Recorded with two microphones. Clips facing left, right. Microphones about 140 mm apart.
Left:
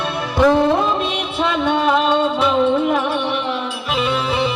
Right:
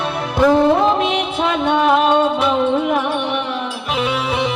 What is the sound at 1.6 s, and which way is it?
Music, 55° right (ahead or behind).